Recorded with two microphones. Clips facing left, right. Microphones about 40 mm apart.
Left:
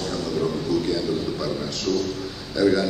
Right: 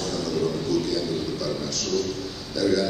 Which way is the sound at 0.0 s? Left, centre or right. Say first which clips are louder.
Left 1 dB; centre.